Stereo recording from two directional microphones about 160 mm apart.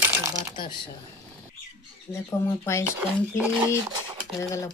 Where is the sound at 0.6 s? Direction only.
30° left (ahead or behind).